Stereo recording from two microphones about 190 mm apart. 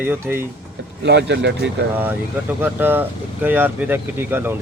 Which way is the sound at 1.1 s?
65° right (ahead or behind).